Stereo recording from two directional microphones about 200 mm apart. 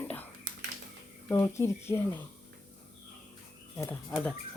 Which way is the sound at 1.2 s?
15° left (ahead or behind).